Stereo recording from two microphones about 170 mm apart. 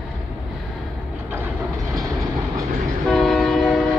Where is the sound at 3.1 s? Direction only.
Centre (ahead or behind).